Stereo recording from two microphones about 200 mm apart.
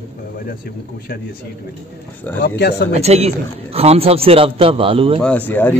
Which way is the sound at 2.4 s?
55° left (ahead or behind).